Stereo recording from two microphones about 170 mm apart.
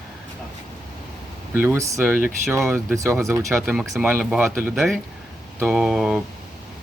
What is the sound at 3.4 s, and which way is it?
Speech, centre (ahead or behind).